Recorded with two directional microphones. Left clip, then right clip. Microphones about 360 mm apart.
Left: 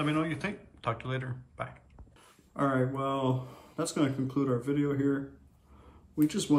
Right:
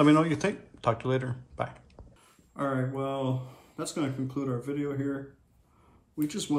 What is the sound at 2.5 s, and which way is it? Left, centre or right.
Speech, centre.